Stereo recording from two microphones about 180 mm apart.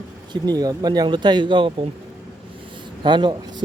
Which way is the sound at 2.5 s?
25° right (ahead or behind).